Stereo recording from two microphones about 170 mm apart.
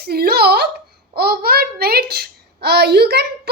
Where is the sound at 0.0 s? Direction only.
65° right (ahead or behind).